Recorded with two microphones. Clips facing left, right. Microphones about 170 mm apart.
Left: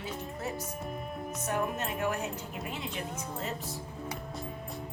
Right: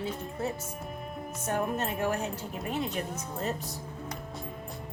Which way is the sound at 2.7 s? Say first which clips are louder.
Right 10 dB; 45° right (ahead or behind).